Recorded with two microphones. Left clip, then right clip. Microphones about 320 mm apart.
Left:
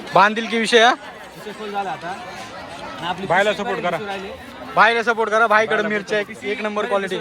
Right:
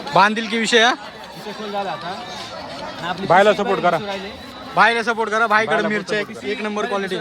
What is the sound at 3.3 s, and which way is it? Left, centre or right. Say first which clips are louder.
Speech: right 5 dB; right.